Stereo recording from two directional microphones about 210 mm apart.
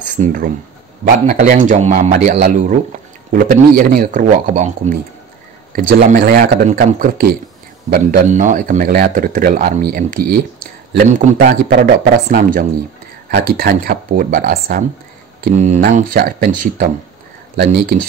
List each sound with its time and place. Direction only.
0.0 s speech: 40° right (ahead or behind)